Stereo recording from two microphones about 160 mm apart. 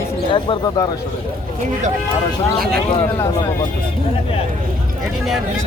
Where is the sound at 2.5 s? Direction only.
Centre (ahead or behind).